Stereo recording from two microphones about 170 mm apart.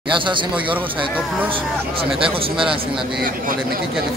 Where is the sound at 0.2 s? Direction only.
30° right (ahead or behind).